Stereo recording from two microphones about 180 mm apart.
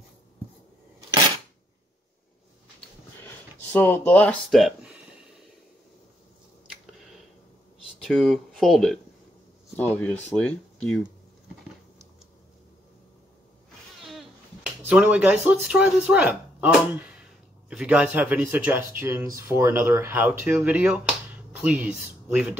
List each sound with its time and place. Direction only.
3.7 s speech: 10° left (ahead or behind)
8.0 s speech: centre (ahead or behind)
14.0 s a sound: centre (ahead or behind)
14.8 s speech: 10° right (ahead or behind)